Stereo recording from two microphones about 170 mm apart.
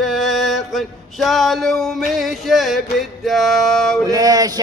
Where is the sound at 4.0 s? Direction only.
20° right (ahead or behind).